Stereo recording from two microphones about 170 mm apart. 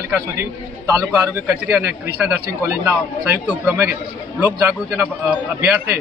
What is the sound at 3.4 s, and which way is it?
Speech, 5° right (ahead or behind).